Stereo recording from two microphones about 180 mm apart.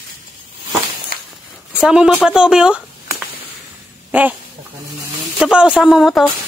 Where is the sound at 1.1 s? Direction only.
55° left (ahead or behind).